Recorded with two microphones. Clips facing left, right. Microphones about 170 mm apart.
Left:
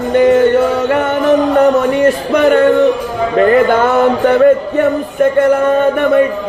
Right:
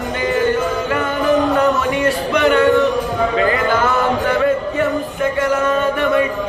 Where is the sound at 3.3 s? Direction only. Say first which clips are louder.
Left 10 dB; 55° left (ahead or behind).